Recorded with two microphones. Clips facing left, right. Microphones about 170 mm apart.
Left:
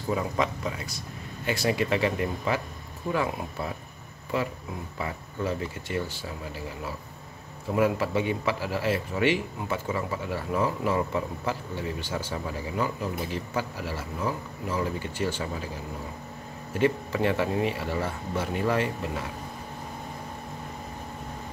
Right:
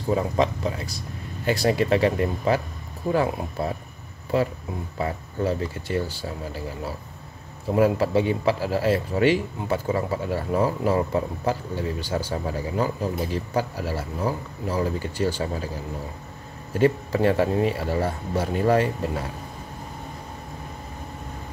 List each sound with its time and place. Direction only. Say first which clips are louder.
0.1 s speech: right 5 dB; 35° right (ahead or behind)
16.7 s speech: right 4 dB; 40° right (ahead or behind)